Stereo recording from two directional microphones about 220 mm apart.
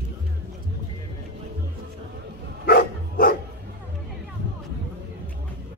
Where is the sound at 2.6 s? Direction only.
45° left (ahead or behind).